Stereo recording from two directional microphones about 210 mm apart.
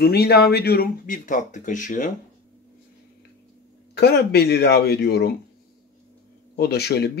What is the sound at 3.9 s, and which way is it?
Speech, 50° left (ahead or behind).